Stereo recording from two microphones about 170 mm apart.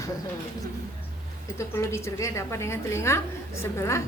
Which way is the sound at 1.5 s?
15° left (ahead or behind).